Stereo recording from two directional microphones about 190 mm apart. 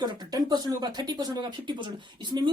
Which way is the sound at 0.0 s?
20° right (ahead or behind).